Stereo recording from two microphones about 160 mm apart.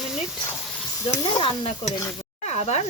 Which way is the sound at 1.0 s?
20° left (ahead or behind).